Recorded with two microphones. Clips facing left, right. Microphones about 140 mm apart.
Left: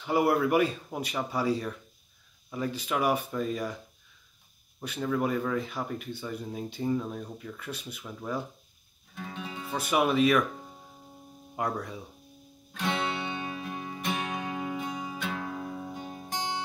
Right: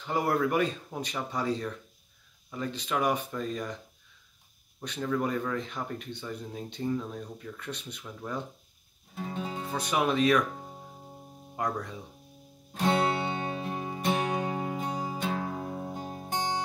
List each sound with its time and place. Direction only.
0.0 s speech: 10° left (ahead or behind)
9.1 s music: 30° right (ahead or behind)
9.7 s speech: 5° left (ahead or behind)
11.5 s speech: 5° left (ahead or behind)
12.7 s music: 35° right (ahead or behind)